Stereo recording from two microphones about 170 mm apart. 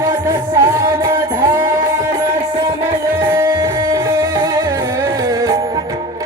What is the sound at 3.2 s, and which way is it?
Music, 15° right (ahead or behind).